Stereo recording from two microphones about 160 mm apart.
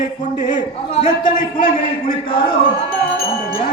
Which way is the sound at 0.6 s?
30° left (ahead or behind).